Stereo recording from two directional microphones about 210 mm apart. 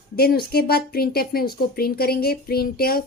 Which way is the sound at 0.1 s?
45° left (ahead or behind).